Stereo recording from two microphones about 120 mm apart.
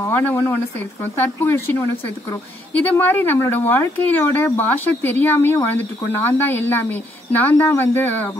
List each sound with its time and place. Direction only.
0.0 s speech: 15° left (ahead or behind)
2.8 s speech: 15° left (ahead or behind)